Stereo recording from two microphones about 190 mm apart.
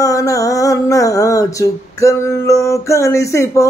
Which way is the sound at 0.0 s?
15° left (ahead or behind).